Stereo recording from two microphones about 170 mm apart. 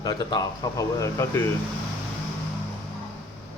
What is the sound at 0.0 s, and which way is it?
A man's voice, 25° left (ahead or behind).